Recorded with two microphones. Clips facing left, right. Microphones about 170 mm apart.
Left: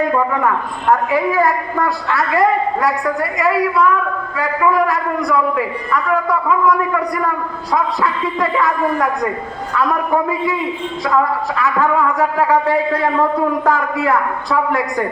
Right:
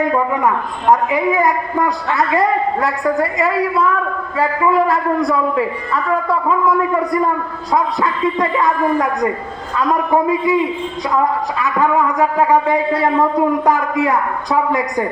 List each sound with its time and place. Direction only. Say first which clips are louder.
1.4 s a man's voice: even; 20° right (ahead or behind)
4.9 s a man's voice: right 2 dB; 25° right (ahead or behind)